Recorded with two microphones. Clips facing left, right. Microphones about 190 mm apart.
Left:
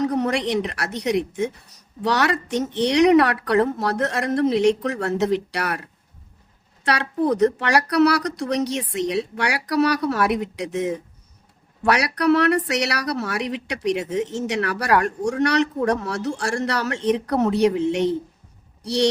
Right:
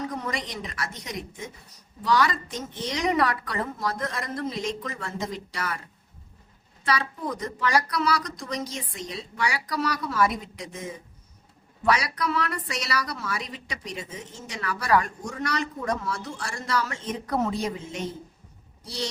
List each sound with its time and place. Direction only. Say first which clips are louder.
0.0 s a woman's voice: left 10 dB; 70° left (ahead or behind)
6.8 s speech: left 7 dB; 70° left (ahead or behind)